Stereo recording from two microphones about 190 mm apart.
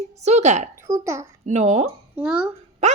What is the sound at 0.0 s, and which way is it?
Speech, 35° right (ahead or behind).